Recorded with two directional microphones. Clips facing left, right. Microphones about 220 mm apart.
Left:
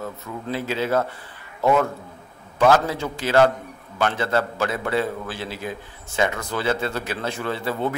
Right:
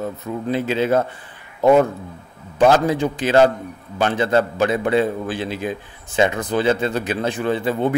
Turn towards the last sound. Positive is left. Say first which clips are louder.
# right 5 dB
turn(degrees=-20)  # may be behind; listen again after turning